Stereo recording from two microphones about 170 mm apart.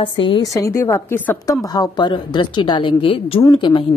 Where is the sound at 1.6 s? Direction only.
25° left (ahead or behind).